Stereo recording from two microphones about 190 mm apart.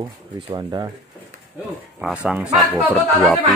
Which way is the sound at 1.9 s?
5° right (ahead or behind).